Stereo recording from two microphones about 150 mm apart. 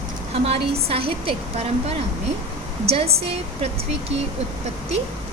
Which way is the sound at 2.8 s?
40° right (ahead or behind).